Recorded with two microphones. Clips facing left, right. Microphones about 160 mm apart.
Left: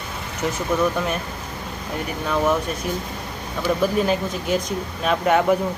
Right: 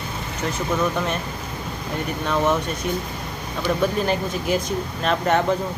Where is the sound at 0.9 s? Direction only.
5° left (ahead or behind).